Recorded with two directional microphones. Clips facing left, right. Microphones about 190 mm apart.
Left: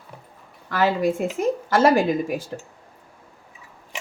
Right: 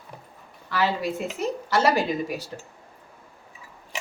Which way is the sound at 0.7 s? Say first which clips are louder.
Left 5 dB; 50° left (ahead or behind).